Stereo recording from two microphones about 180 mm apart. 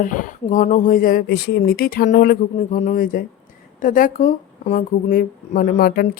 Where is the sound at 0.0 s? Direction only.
45° left (ahead or behind).